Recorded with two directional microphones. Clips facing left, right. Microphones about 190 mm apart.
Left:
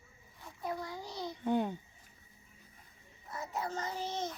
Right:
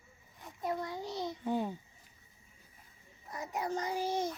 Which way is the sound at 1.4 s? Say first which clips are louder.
Left 3 dB; 5° right (ahead or behind).